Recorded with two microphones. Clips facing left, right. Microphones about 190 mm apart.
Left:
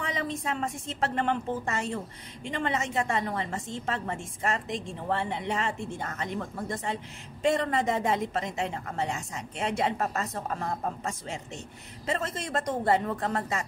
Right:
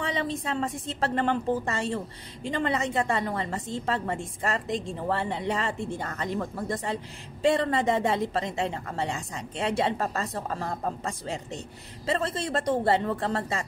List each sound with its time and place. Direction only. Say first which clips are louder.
0.0 s a woman's voice: right 2 dB; 30° right (ahead or behind)